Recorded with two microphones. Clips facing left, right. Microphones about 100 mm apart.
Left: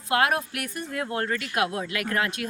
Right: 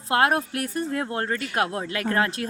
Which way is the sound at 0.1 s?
30° right (ahead or behind).